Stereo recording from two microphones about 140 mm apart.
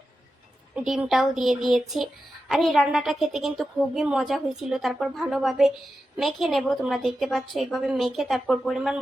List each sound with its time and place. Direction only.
0.8 s a woman's voice: centre (ahead or behind)